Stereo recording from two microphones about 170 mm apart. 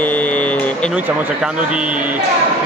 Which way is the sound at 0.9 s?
5° right (ahead or behind).